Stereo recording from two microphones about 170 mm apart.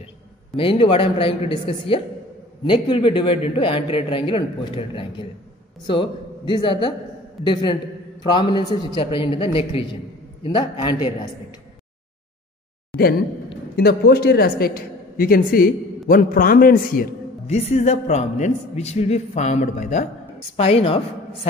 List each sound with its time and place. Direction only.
0.6 s a man's voice: 30° left (ahead or behind)
8.2 s a man's voice: 25° left (ahead or behind)
13.7 s a woman's voice: 65° left (ahead or behind)
17.5 s a man's voice: 40° left (ahead or behind)